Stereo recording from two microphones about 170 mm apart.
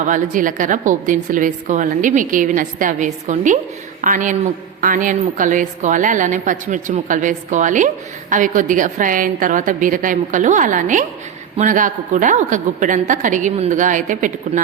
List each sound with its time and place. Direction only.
0.1 s a woman's voice: 50° right (ahead or behind)